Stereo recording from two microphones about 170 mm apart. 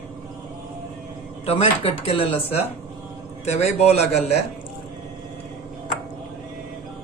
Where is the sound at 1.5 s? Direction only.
35° left (ahead or behind).